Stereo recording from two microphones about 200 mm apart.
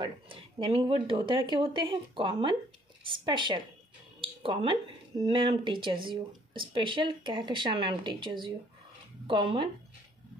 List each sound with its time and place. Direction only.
0.0 s speech: 25° right (ahead or behind)